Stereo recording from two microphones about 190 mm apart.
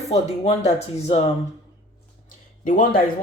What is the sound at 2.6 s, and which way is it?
Speech, 45° left (ahead or behind).